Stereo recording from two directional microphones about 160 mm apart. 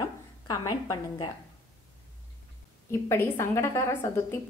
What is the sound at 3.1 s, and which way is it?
A woman's voice, 15° left (ahead or behind).